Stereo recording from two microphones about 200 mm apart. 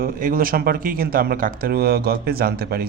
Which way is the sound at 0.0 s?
45° right (ahead or behind).